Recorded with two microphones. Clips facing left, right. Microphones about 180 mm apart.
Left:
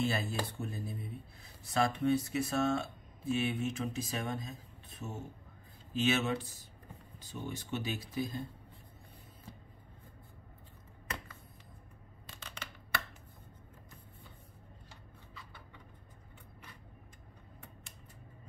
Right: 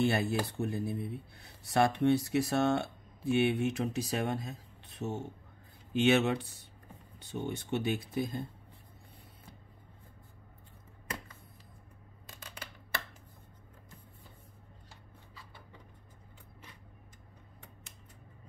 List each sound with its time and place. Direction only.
0.0 s speech: 70° right (ahead or behind)